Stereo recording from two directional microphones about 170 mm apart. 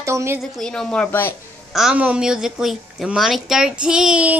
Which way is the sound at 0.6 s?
5° left (ahead or behind).